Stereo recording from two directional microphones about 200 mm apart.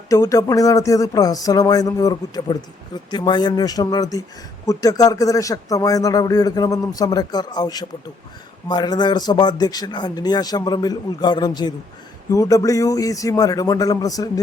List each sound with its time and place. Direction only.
0.1 s a man's voice: 15° left (ahead or behind)